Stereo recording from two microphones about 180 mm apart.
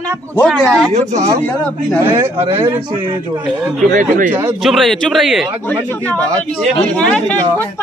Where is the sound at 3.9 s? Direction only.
45° right (ahead or behind).